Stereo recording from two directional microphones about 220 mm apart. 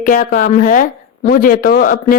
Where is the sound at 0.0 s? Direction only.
40° left (ahead or behind).